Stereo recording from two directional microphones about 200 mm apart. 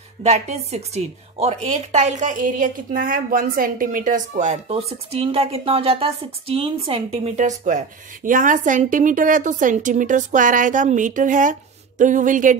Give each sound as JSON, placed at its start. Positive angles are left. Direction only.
{"t": 0.2, "sound": "speech", "side_deg": -35}